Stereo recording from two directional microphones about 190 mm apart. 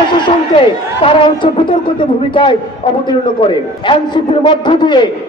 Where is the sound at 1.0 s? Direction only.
25° left (ahead or behind).